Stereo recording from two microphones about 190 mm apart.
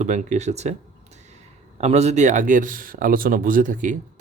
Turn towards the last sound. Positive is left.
turn(degrees=-45)  # may be behind; listen again after turning